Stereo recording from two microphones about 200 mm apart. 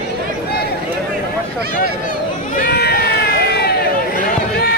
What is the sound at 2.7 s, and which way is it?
Run, 50° left (ahead or behind).